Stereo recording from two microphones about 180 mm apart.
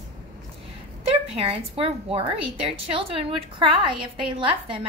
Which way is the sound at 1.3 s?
30° right (ahead or behind).